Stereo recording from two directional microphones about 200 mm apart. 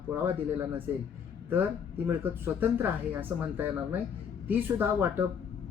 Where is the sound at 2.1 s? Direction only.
10° right (ahead or behind).